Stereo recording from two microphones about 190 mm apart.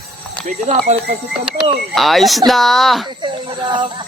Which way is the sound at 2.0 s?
Centre (ahead or behind).